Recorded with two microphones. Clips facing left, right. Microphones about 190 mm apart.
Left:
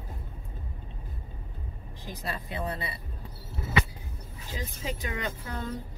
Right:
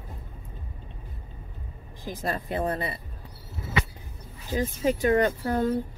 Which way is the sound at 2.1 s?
50° right (ahead or behind).